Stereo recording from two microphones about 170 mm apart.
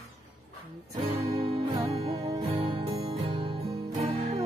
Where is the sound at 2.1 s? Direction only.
20° right (ahead or behind).